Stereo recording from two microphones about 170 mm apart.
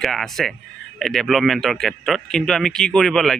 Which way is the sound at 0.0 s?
Centre (ahead or behind).